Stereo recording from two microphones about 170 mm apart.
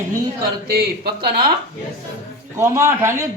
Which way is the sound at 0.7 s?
65° right (ahead or behind).